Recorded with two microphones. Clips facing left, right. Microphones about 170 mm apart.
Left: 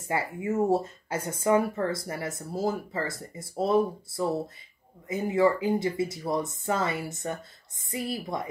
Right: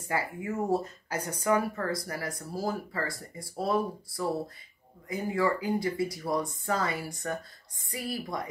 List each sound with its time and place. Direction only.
0.0 s speech: 25° left (ahead or behind)